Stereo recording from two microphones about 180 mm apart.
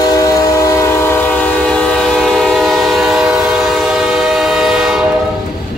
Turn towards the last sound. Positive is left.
turn(degrees=-5)  # may be behind; listen again after turning